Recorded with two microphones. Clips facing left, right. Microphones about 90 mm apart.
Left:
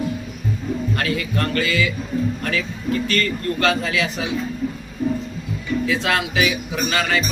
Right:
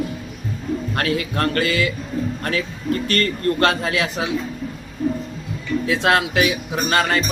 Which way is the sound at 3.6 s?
60° right (ahead or behind).